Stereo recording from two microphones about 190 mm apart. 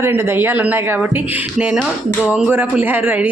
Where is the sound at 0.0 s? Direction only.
10° right (ahead or behind).